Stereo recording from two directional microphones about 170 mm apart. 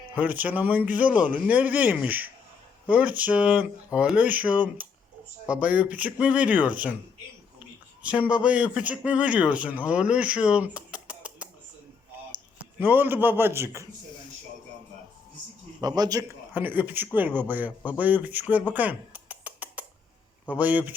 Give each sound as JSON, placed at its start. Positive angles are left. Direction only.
{"t": 0.2, "sound": "speech", "side_deg": -10}
{"t": 8.0, "sound": "speech", "side_deg": -5}
{"t": 12.8, "sound": "speech", "side_deg": -10}
{"t": 15.8, "sound": "a man's voice", "side_deg": -20}
{"t": 16.6, "sound": "speech", "side_deg": -10}